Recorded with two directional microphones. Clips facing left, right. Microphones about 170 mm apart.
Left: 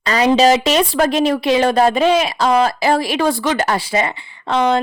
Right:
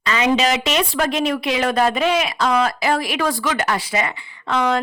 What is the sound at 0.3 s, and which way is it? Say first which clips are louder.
Speech: left 6 dB; 35° left (ahead or behind).